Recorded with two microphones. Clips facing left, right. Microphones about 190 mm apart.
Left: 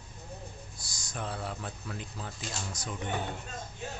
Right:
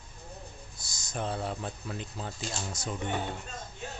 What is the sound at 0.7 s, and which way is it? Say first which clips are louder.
Speech: right 6 dB; 20° right (ahead or behind).